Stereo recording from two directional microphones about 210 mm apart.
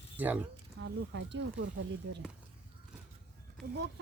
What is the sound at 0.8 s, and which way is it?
Speech, 60° right (ahead or behind).